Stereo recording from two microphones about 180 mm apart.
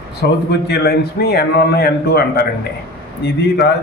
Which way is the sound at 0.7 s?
65° left (ahead or behind).